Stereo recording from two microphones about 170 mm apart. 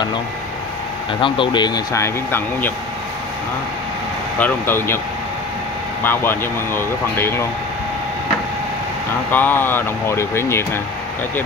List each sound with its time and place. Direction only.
1.2 s speech: 30° left (ahead or behind); by 2.7 s 15° left (ahead or behind)
4.4 s speech: 10° left (ahead or behind)
6.0 s speech: 15° left (ahead or behind)
9.3 s speech: 10° left (ahead or behind)